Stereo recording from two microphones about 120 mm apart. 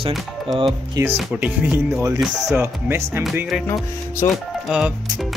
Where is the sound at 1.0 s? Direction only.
30° right (ahead or behind).